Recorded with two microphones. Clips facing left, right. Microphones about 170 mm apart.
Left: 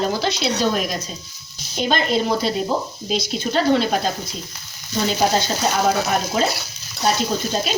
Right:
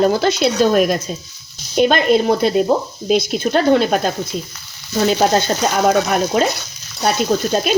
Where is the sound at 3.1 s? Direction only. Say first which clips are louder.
Right 6 dB; 55° right (ahead or behind).